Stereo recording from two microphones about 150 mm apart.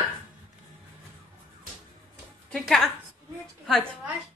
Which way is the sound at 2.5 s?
5° left (ahead or behind).